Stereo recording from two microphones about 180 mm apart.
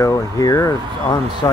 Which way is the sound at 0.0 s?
20° left (ahead or behind).